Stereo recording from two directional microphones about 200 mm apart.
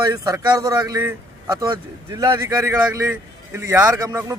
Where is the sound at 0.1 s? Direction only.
15° right (ahead or behind).